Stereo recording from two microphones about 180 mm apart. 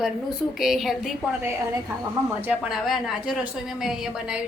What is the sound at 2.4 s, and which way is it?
A woman's voice, 5° right (ahead or behind).